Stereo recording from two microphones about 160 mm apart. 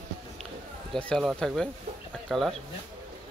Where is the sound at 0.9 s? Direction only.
5° left (ahead or behind).